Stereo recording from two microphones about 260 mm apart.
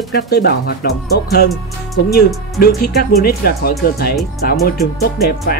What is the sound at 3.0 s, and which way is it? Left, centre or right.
Speech, left.